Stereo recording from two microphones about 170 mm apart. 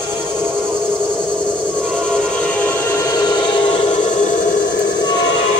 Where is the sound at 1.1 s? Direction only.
5° left (ahead or behind).